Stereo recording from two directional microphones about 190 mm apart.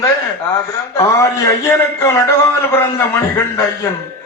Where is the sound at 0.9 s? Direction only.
15° left (ahead or behind).